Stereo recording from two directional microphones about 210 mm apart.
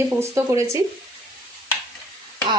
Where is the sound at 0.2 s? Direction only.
15° right (ahead or behind).